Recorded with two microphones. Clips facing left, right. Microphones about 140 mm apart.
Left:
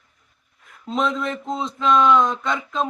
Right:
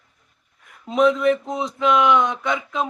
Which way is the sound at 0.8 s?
10° right (ahead or behind).